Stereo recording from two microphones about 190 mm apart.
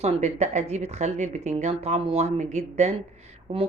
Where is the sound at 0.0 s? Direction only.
35° right (ahead or behind).